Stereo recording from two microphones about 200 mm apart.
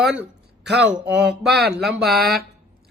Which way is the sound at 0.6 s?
60° right (ahead or behind).